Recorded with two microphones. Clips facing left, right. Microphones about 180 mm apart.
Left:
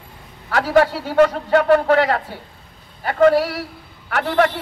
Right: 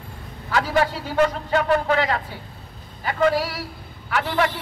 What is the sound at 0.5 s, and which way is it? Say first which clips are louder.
A man's voice: left 5 dB; 60° left (ahead or behind).